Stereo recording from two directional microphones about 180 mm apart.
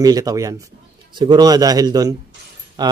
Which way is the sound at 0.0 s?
20° right (ahead or behind).